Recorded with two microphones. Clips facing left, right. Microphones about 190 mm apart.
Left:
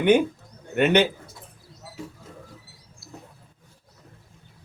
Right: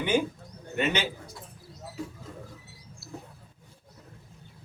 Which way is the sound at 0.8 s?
60° left (ahead or behind).